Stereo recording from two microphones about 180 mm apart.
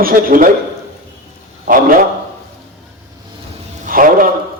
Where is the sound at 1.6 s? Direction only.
50° right (ahead or behind).